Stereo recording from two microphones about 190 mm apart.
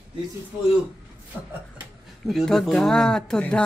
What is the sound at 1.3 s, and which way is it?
Speech, 10° right (ahead or behind).